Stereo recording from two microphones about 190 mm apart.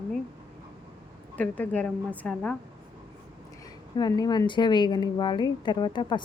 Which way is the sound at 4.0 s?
20° left (ahead or behind).